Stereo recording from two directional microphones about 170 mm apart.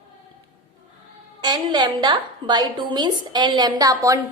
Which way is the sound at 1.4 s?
25° right (ahead or behind).